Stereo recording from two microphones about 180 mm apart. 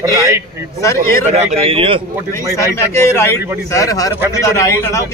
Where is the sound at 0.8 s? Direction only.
15° left (ahead or behind).